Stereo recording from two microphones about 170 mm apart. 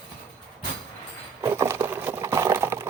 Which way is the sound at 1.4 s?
15° right (ahead or behind).